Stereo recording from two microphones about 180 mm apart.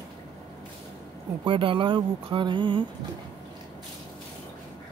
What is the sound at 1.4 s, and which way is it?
Speech, 30° right (ahead or behind).